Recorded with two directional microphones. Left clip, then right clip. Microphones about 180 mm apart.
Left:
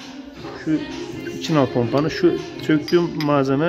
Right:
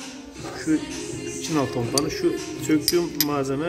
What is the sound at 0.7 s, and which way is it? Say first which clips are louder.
Speech: left 1 dB; 35° left (ahead or behind).